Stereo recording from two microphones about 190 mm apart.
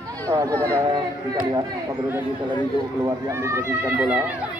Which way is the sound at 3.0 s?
15° right (ahead or behind).